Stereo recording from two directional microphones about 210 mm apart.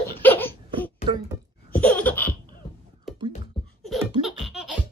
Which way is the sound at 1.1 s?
20° right (ahead or behind).